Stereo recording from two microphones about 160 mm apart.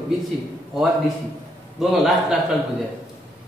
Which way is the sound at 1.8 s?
5° right (ahead or behind).